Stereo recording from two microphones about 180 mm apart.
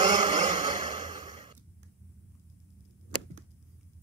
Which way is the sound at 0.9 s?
45° right (ahead or behind).